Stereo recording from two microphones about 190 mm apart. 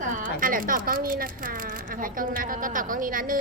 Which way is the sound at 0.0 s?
45° right (ahead or behind).